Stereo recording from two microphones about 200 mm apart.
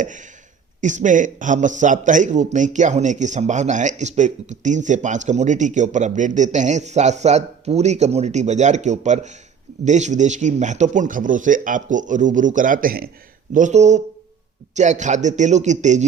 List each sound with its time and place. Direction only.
0.0 s a man's voice: 40° right (ahead or behind)